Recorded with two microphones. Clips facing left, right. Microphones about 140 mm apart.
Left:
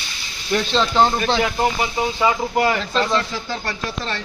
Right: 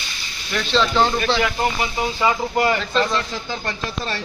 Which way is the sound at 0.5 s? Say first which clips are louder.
Left 1 dB; 30° left (ahead or behind).